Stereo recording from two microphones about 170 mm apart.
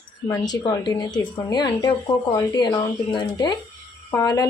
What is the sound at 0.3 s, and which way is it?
Speech, 25° left (ahead or behind).